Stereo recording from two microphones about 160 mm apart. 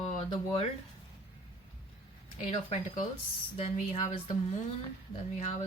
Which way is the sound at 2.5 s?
35° left (ahead or behind).